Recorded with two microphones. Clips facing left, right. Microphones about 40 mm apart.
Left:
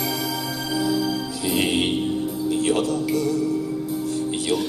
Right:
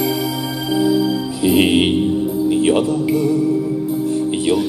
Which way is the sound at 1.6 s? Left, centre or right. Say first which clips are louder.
Right 7 dB; right.